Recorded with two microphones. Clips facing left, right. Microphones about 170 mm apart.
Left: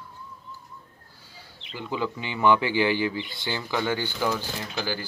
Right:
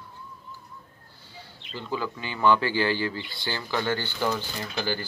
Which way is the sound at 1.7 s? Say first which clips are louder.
Left 2 dB; 15° left (ahead or behind).